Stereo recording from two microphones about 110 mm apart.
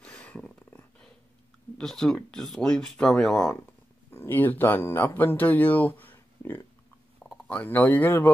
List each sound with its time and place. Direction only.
0.0 s a sound: 10° left (ahead or behind)
1.8 s speech: 5° left (ahead or behind)
4.1 s speech: 20° left (ahead or behind)